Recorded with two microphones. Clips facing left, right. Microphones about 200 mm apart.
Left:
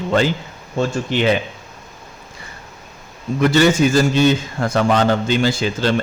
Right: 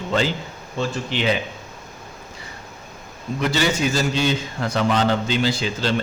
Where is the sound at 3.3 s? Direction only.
50° left (ahead or behind).